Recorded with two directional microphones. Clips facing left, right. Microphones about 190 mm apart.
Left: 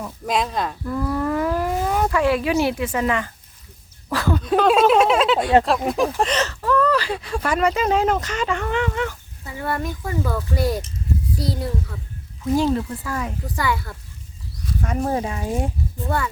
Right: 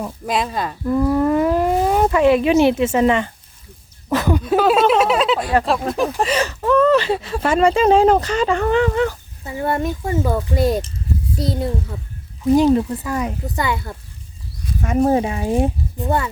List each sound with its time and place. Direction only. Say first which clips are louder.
0.3 s speech: even; centre (ahead or behind)
0.9 s speech: right 9 dB; 25° right (ahead or behind)